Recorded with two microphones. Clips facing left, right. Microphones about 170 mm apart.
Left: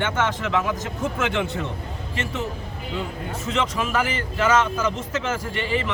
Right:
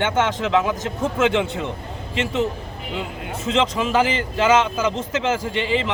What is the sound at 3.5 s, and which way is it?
Speech, 30° right (ahead or behind).